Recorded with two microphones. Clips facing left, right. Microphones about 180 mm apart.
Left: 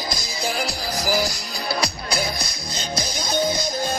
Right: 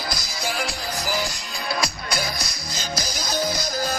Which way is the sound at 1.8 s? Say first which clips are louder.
Left 2 dB; centre (ahead or behind).